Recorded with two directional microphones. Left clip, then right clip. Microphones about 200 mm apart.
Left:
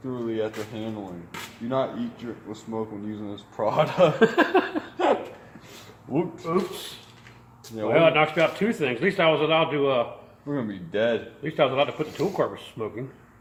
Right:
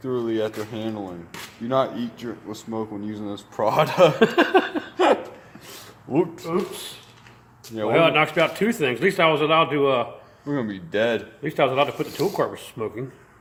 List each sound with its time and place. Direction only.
0.0 s speech: 50° right (ahead or behind)
4.2 s laughter: 35° right (ahead or behind)
6.1 s speech: 45° right (ahead or behind)
7.8 s speech: 50° right (ahead or behind)